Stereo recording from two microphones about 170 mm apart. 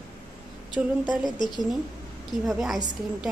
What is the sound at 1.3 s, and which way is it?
Speech, 25° left (ahead or behind).